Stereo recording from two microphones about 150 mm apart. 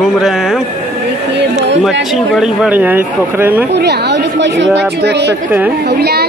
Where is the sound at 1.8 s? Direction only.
Centre (ahead or behind).